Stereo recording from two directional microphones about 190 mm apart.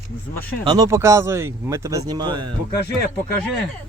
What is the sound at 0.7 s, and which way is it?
Speech, 20° right (ahead or behind).